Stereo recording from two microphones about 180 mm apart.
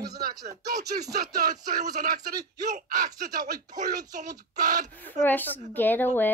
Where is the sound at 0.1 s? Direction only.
60° right (ahead or behind).